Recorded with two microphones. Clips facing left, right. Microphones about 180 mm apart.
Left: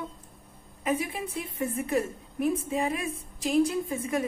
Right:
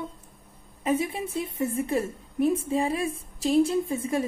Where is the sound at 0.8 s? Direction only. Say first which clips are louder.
Right 3 dB; 25° right (ahead or behind).